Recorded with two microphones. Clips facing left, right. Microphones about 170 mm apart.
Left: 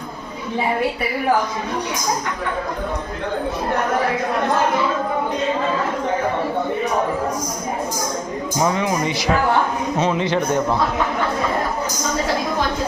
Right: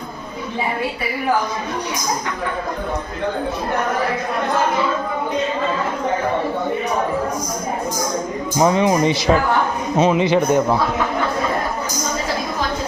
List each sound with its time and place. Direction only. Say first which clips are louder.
8.6 s speech: right 5 dB; 25° right (ahead or behind)
10.0 s a man's voice: right 5 dB; 15° right (ahead or behind)